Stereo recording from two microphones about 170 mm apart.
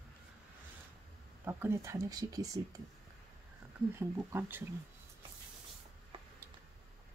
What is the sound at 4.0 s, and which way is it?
Speech, 10° right (ahead or behind).